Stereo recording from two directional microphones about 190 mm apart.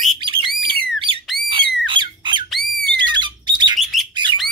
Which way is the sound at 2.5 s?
Centre (ahead or behind).